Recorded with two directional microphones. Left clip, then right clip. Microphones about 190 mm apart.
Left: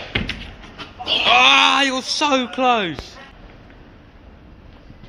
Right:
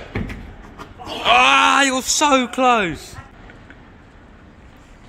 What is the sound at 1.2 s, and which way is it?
Speech, 20° right (ahead or behind).